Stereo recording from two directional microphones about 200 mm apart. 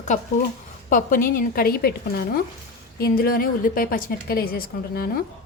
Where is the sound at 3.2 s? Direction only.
45° left (ahead or behind).